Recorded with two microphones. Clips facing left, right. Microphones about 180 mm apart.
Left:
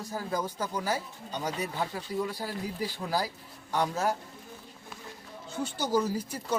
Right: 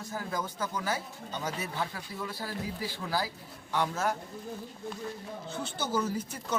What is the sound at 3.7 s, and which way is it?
Speech, 35° left (ahead or behind).